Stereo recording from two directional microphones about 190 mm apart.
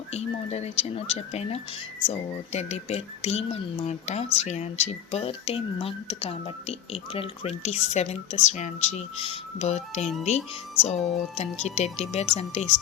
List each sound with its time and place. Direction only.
0.1 s speech: 35° left (ahead or behind)